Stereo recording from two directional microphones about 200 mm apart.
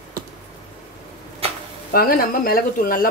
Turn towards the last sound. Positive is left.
turn(degrees=45)  # may be behind; listen again after turning